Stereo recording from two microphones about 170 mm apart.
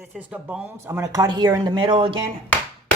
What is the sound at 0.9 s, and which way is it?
Speech, 20° right (ahead or behind).